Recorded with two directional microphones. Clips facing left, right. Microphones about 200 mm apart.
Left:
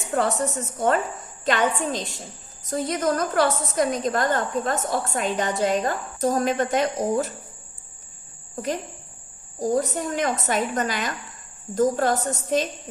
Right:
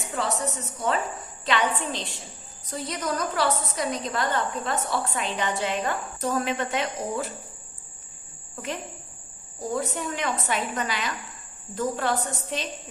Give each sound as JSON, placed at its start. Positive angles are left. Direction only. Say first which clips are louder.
{"t": 0.1, "sound": "a woman's voice", "louder": "left 6 dB", "side_deg": 50}
{"t": 8.5, "sound": "a woman's voice", "louder": "left 5 dB", "side_deg": 40}